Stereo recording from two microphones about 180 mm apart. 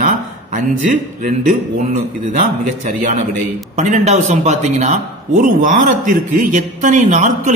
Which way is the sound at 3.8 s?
40° right (ahead or behind).